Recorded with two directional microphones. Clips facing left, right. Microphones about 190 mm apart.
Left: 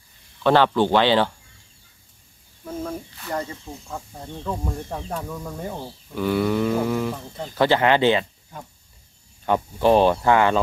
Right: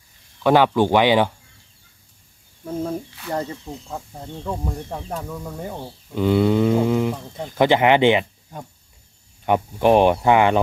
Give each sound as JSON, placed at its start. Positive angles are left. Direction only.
{"t": 0.4, "sound": "speech", "side_deg": -10}
{"t": 2.6, "sound": "speech", "side_deg": -25}
{"t": 3.9, "sound": "speech", "side_deg": -10}
{"t": 9.5, "sound": "speech", "side_deg": -15}